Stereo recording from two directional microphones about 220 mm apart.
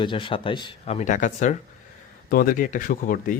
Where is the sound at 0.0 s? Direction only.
20° left (ahead or behind).